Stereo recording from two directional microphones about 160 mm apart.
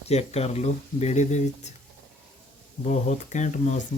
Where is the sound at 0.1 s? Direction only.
40° left (ahead or behind).